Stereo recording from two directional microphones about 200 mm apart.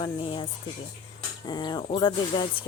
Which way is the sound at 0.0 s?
25° left (ahead or behind).